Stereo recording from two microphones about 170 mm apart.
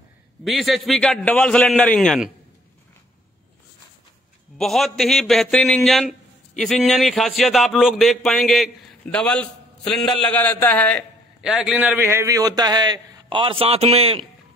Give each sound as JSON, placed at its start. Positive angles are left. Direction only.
{"t": 0.4, "sound": "a man's voice", "side_deg": 0}
{"t": 4.6, "sound": "a man's voice", "side_deg": 0}
{"t": 11.4, "sound": "a man's voice", "side_deg": -5}